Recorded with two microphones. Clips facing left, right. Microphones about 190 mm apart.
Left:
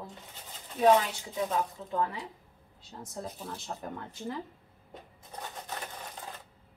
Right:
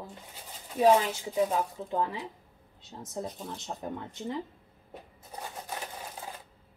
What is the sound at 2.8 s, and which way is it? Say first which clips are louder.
Speech: right 1 dB; 20° right (ahead or behind).